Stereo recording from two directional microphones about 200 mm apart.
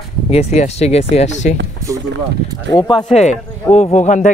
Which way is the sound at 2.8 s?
20° left (ahead or behind).